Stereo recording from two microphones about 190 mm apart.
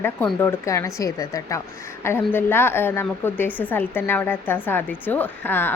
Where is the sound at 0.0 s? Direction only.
10° left (ahead or behind).